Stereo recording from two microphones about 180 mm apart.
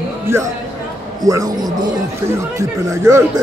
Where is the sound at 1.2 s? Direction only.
20° right (ahead or behind).